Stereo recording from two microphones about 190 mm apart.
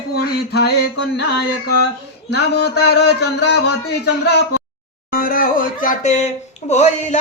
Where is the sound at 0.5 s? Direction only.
60° left (ahead or behind).